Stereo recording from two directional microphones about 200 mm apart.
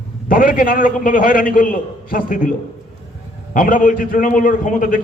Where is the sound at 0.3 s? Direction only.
45° left (ahead or behind).